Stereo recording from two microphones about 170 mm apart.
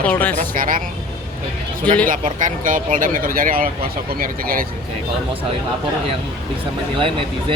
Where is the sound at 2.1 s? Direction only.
50° right (ahead or behind).